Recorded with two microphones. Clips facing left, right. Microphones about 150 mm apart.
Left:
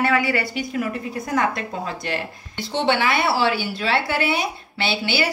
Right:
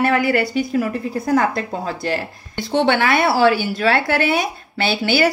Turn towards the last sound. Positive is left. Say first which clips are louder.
# right 6 dB
turn(degrees=-50)  # may be behind; listen again after turning